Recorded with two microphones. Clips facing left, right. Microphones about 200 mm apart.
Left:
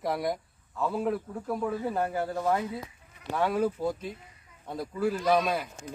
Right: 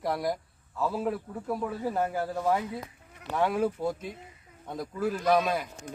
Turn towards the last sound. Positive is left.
turn(degrees=5)  # may be behind; listen again after turning